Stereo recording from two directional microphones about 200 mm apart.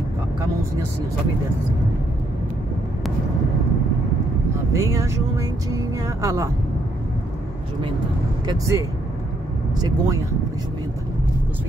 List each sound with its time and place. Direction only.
4.7 s speech: 15° right (ahead or behind)
8.5 s speech: 15° right (ahead or behind)